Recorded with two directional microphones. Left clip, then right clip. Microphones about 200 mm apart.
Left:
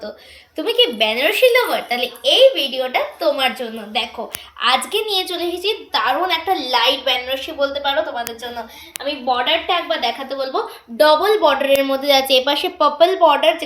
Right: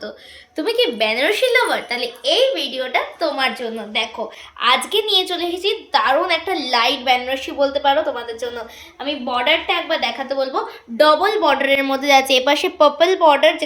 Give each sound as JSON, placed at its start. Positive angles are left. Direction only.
{"t": 0.5, "sound": "speech", "side_deg": -15}
{"t": 4.6, "sound": "a woman's voice", "side_deg": -25}
{"t": 9.0, "sound": "a woman's voice", "side_deg": -45}